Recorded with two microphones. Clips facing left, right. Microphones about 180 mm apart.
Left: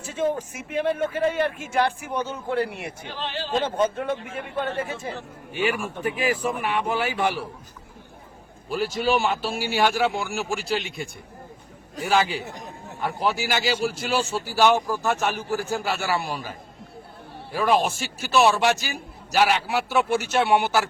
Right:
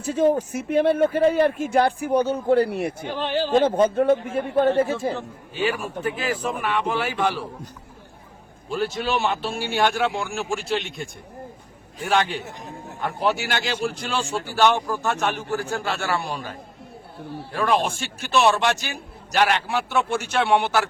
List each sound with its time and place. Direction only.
0.0 s speech: 40° right (ahead or behind)
3.8 s speech: 40° right (ahead or behind)
5.5 s a man's voice: 10° left (ahead or behind)
8.7 s a man's voice: centre (ahead or behind)